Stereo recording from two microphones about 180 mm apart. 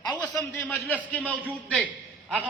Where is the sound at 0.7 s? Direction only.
10° left (ahead or behind).